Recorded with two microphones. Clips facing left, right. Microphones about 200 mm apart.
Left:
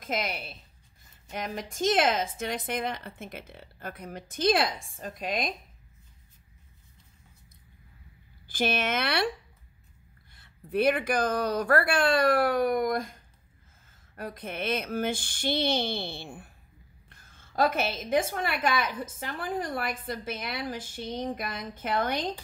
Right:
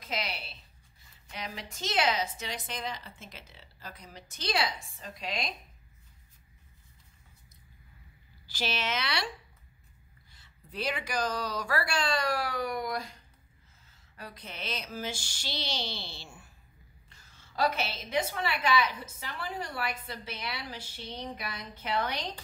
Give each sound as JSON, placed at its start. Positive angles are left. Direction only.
{"t": 0.0, "sound": "a woman's voice", "side_deg": 50}
{"t": 8.5, "sound": "speech", "side_deg": 55}
{"t": 10.3, "sound": "a woman's voice", "side_deg": 55}